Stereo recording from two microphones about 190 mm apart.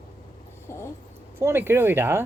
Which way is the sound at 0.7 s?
15° left (ahead or behind).